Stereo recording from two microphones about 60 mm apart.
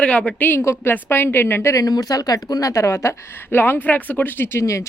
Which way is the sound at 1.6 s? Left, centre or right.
Left.